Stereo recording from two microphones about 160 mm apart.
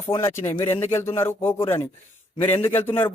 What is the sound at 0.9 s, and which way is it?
Speech, 15° left (ahead or behind).